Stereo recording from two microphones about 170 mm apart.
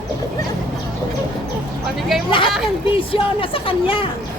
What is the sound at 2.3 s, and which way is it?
Speech, 30° left (ahead or behind).